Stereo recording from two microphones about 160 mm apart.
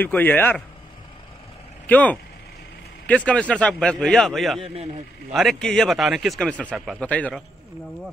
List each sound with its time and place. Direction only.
0.0 s speech: 10° left (ahead or behind)
1.9 s speech: 10° left (ahead or behind)